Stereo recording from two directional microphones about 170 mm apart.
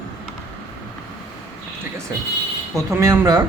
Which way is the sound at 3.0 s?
20° right (ahead or behind).